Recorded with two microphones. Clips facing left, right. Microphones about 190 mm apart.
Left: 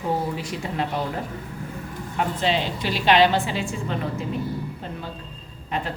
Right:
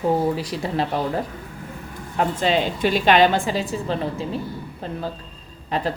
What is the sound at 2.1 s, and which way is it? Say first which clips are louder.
A woman's voice: right 3 dB; 45° right (ahead or behind).